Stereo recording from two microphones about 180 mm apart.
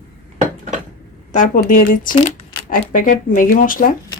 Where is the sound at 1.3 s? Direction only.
45° left (ahead or behind).